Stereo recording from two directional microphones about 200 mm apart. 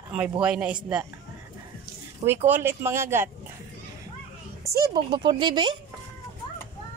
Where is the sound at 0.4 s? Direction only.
5° right (ahead or behind).